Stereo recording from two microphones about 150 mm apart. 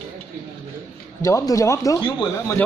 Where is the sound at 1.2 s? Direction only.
20° left (ahead or behind).